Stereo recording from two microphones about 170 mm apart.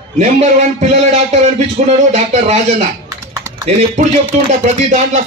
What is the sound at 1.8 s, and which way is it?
Music, 40° right (ahead or behind).